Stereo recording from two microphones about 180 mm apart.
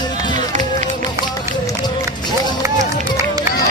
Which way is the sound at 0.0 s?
25° left (ahead or behind).